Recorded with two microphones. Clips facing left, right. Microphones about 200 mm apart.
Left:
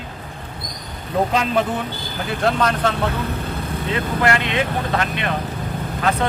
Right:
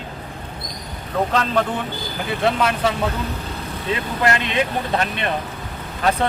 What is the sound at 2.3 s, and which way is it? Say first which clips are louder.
Speech: even; centre (ahead or behind).